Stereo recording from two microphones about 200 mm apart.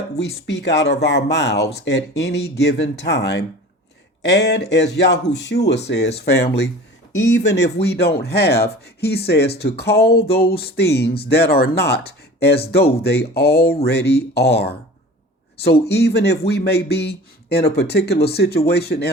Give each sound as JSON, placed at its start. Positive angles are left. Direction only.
{"t": 0.4, "sound": "speech", "side_deg": 60}